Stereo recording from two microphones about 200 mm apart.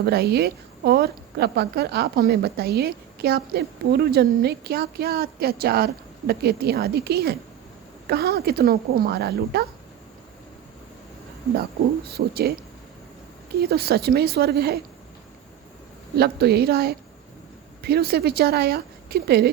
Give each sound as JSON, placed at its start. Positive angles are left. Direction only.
{"t": 0.0, "sound": "a woman's voice", "side_deg": -50}
{"t": 12.1, "sound": "a woman's voice", "side_deg": -50}
{"t": 13.6, "sound": "a woman's voice", "side_deg": -50}
{"t": 16.1, "sound": "a woman's voice", "side_deg": -55}